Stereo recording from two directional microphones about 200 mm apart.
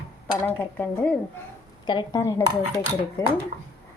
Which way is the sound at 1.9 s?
20° left (ahead or behind).